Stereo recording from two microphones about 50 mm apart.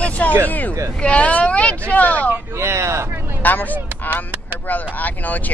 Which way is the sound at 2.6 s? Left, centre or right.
Right.